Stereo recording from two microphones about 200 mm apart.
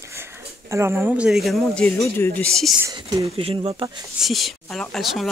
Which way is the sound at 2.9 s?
20° right (ahead or behind).